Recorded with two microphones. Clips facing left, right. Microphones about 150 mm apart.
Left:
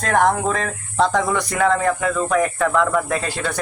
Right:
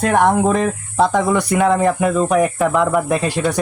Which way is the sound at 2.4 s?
10° right (ahead or behind).